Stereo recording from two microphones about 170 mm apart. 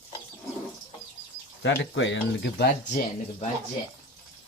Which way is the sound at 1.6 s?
90° left.